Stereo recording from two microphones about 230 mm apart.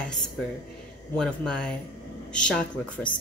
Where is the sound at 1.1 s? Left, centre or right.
Centre.